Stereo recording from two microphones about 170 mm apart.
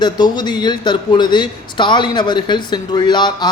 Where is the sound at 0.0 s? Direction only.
25° left (ahead or behind).